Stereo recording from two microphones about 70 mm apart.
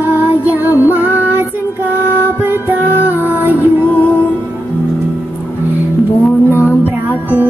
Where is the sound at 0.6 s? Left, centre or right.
Right.